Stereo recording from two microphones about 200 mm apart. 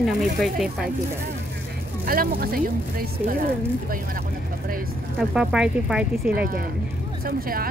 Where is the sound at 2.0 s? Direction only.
50° right (ahead or behind).